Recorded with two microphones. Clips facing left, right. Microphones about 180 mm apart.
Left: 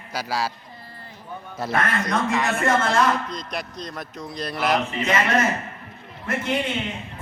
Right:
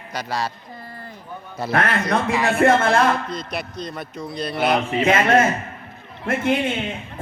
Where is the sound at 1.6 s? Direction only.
Centre (ahead or behind).